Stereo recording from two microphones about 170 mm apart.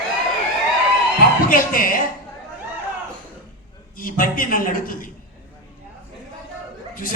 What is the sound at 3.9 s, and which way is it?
A man's voice, 55° left (ahead or behind).